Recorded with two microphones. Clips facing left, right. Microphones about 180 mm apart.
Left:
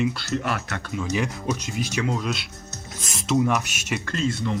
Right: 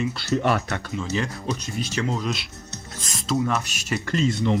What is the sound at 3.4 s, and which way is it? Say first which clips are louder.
Speech: left 3 dB; 10° left (ahead or behind).